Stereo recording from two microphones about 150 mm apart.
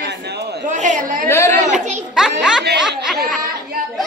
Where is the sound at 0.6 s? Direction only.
55° right (ahead or behind).